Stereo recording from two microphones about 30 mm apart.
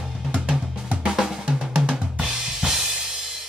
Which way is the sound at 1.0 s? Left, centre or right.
Centre.